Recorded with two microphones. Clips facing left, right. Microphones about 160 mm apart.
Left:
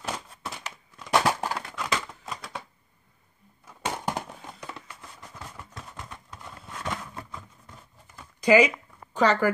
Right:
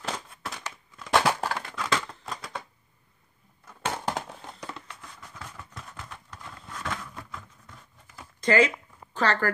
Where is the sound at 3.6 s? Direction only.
10° left (ahead or behind).